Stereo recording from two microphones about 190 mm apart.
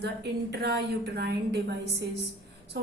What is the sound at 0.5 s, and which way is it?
A woman's voice, 60° right (ahead or behind).